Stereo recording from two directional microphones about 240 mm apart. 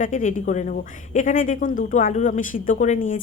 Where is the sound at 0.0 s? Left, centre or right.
Left.